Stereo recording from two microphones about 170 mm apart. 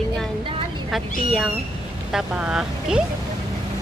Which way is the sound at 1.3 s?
Centre (ahead or behind).